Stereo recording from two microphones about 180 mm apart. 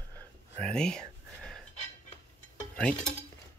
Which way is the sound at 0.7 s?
5° left (ahead or behind).